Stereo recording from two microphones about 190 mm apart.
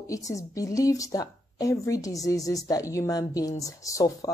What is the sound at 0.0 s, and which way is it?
Speech, 15° left (ahead or behind).